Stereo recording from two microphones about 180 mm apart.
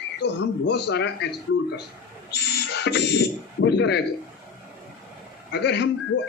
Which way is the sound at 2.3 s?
70° left (ahead or behind).